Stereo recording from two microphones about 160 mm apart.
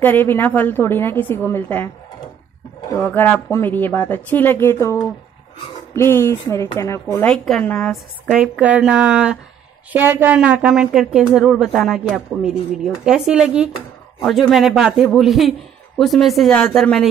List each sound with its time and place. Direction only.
0.0 s speech: 15° left (ahead or behind)
3.0 s speech: 10° left (ahead or behind)
7.2 s speech: 5° left (ahead or behind)